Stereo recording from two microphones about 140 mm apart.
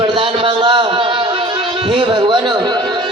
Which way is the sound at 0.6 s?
35° right (ahead or behind).